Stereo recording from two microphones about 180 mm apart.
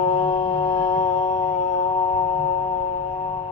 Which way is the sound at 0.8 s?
45° left (ahead or behind).